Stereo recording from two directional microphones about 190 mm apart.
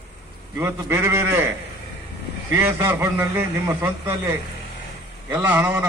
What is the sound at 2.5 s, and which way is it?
A man's voice, 15° right (ahead or behind).